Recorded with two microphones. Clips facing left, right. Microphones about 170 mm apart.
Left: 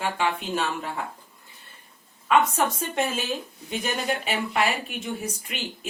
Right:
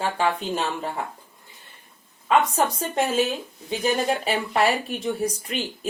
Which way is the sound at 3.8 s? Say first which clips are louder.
Right 6 dB; 35° right (ahead or behind).